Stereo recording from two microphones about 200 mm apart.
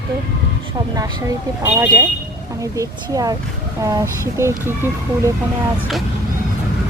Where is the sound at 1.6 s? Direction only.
10° right (ahead or behind).